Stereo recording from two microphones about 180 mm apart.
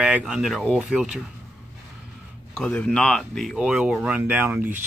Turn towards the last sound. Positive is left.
turn(degrees=-10)  # may be behind; listen again after turning